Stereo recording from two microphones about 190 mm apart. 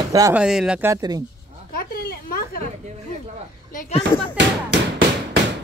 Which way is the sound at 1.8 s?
50° left (ahead or behind).